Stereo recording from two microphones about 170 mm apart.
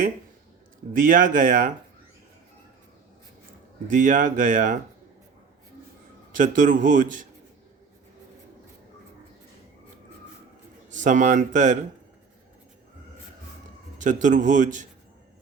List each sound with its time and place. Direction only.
0.9 s speech: 50° right (ahead or behind)
3.8 s speech: 50° right (ahead or behind)
6.3 s speech: 50° right (ahead or behind)
10.8 s speech: 45° right (ahead or behind)
14.0 s speech: 50° right (ahead or behind)